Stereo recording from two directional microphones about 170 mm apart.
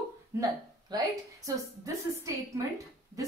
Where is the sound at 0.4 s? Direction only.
20° right (ahead or behind).